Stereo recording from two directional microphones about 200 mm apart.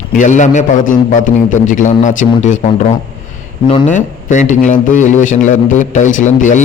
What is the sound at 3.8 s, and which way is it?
A man's voice, 40° left (ahead or behind).